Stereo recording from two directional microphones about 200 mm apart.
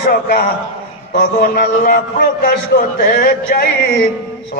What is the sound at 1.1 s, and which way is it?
A man's voice, 45° left (ahead or behind).